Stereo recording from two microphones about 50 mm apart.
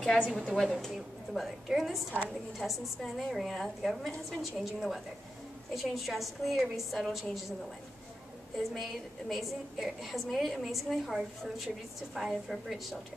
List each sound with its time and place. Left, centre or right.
0.3 s a woman's voice: centre
8.5 s a woman's voice: centre